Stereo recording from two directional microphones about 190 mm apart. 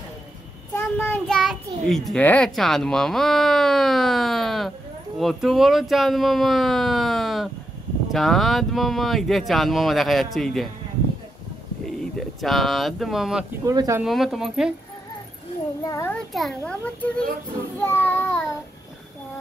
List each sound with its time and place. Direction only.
0.7 s child singing: 10° left (ahead or behind)
1.2 s a child's voice: centre (ahead or behind)
12.0 s speech: centre (ahead or behind)
13.7 s speech: 15° right (ahead or behind)
14.0 s a child's voice: centre (ahead or behind)
15.8 s a child's voice: 15° left (ahead or behind)
16.3 s a child's voice: 5° left (ahead or behind)